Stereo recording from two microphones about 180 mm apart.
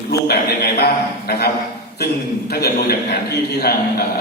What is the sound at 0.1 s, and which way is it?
Speech, 60° left (ahead or behind).